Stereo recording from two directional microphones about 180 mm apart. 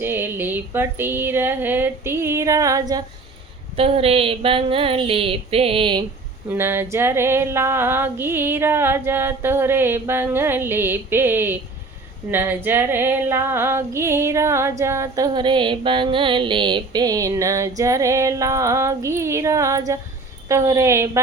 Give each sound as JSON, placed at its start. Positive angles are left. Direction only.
{"t": 0.0, "sound": "female singing", "side_deg": -10}
{"t": 3.8, "sound": "a sound", "side_deg": -30}
{"t": 6.5, "sound": "female singing", "side_deg": -10}